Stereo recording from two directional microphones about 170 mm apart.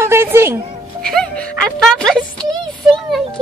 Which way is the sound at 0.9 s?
5° left (ahead or behind).